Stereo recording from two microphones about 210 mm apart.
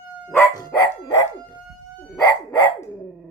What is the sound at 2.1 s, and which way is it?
Dog, 20° left (ahead or behind).